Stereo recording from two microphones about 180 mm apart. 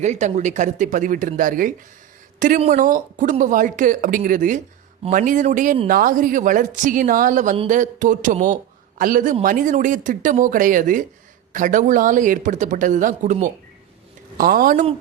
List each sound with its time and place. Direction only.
0.0 s speech: 40° right (ahead or behind)